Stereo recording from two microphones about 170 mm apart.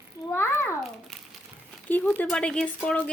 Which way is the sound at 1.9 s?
10° left (ahead or behind).